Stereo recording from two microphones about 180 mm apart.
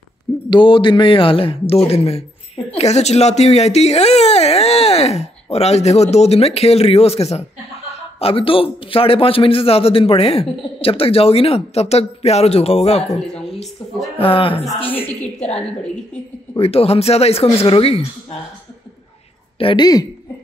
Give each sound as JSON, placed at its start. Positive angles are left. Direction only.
{"t": 0.5, "sound": "a man's voice", "side_deg": 30}
{"t": 14.1, "sound": "a man's voice", "side_deg": 30}
{"t": 14.9, "sound": "a woman's voice", "side_deg": 10}
{"t": 16.5, "sound": "a man's voice", "side_deg": 35}
{"t": 19.6, "sound": "speech", "side_deg": 25}